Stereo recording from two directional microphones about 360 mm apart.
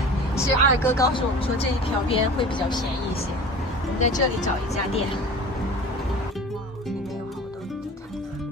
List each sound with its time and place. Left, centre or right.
0.4 s speech: centre
4.0 s speech: centre